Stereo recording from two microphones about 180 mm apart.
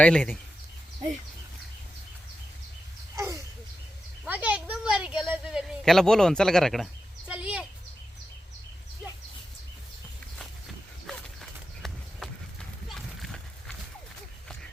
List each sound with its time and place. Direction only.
0.0 s speech: 10° left (ahead or behind)
3.2 s a sound: 15° right (ahead or behind)
11.0 s horse: centre (ahead or behind)